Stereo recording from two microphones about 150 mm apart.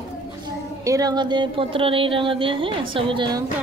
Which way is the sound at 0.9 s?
25° right (ahead or behind).